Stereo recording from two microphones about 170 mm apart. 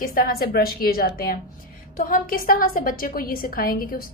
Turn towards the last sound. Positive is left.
turn(degrees=55)  # may be behind; listen again after turning